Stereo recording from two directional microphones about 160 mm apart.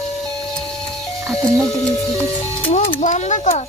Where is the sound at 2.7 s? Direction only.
45° left (ahead or behind).